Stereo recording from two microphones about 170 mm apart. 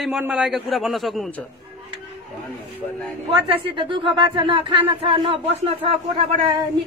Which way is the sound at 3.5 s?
30° right (ahead or behind).